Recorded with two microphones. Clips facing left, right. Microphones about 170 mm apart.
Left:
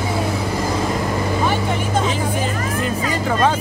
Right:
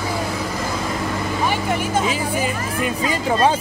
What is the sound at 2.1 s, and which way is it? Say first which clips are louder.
Speech: left 1 dB; 10° right (ahead or behind).